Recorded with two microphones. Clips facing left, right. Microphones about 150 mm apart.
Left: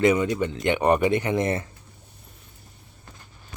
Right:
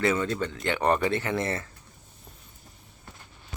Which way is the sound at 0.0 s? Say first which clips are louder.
Left 5 dB; 15° left (ahead or behind).